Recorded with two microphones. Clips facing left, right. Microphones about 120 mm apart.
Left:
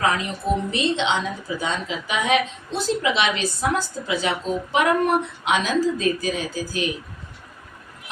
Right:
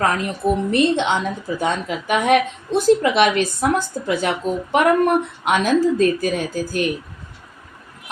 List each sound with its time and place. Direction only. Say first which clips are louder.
0.0 s a woman's voice: right 3 dB; 55° right (ahead or behind)